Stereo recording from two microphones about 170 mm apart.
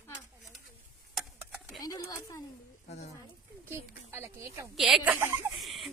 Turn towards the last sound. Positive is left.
turn(degrees=0)  # may be behind; listen again after turning